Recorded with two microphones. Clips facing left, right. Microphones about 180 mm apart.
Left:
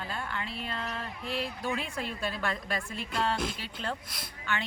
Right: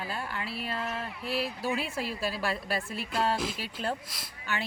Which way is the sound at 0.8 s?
40° left (ahead or behind).